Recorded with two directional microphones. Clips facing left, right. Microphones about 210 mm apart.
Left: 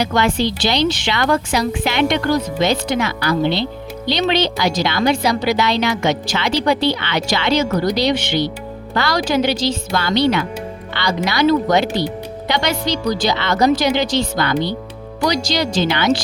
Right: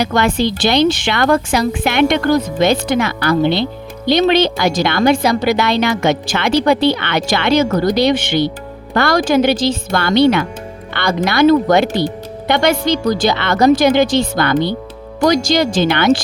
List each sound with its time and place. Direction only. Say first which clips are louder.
0.0 s a woman's voice: right 2 dB; 50° right (ahead or behind)